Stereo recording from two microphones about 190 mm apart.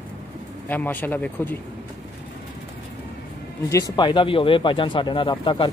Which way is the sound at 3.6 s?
15° left (ahead or behind).